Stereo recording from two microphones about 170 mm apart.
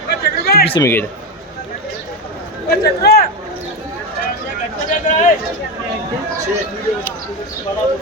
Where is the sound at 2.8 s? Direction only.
65° left (ahead or behind).